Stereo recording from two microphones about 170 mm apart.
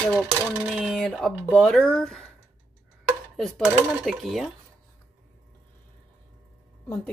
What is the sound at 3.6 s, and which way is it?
Speech, centre (ahead or behind).